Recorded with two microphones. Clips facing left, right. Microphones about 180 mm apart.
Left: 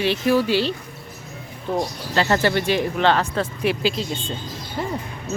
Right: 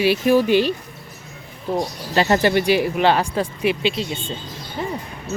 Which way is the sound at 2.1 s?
15° right (ahead or behind).